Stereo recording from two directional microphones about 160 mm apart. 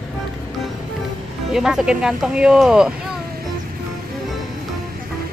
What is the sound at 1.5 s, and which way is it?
Speech, 5° right (ahead or behind).